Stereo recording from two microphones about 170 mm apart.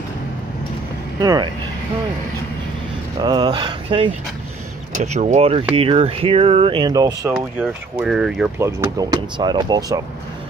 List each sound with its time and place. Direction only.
1.2 s speech: 20° right (ahead or behind)
3.2 s speech: 25° right (ahead or behind)
4.9 s speech: 40° right (ahead or behind); by 7.3 s 20° right (ahead or behind)
7.3 s speech: 5° right (ahead or behind)
8.5 s speech: 15° right (ahead or behind)